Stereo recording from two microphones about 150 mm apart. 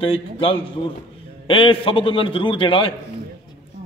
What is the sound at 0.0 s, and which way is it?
A man's voice, 35° left (ahead or behind).